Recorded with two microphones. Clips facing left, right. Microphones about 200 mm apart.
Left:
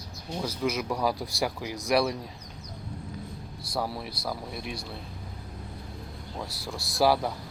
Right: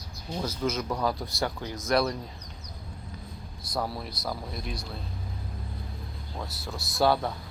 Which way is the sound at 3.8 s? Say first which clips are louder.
Even; centre (ahead or behind).